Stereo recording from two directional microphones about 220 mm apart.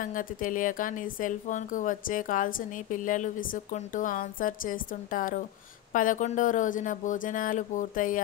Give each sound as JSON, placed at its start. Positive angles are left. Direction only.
{"t": 0.0, "sound": "speech", "side_deg": 40}